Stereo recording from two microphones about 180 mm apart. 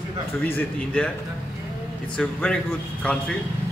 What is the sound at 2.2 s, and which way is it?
A man's voice, 5° left (ahead or behind).